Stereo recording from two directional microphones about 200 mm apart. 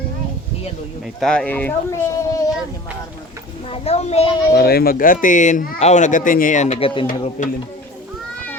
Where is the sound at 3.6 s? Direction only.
30° left (ahead or behind).